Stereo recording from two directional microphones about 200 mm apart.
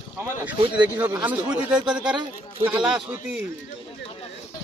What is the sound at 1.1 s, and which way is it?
Speech, 10° right (ahead or behind).